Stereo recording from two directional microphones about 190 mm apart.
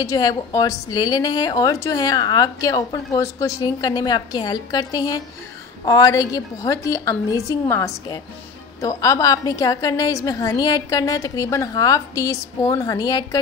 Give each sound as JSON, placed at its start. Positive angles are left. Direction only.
{"t": 0.0, "sound": "a woman's voice", "side_deg": 20}